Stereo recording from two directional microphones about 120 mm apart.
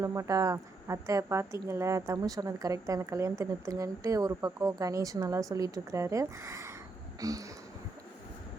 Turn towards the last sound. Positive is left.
turn(degrees=-30)  # may be behind; listen again after turning